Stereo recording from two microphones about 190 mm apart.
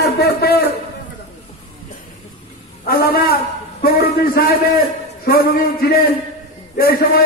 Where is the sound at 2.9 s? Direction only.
55° left (ahead or behind).